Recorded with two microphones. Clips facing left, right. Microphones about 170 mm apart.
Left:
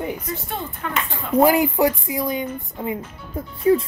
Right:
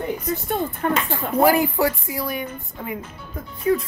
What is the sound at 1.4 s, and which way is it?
Speech, 20° left (ahead or behind).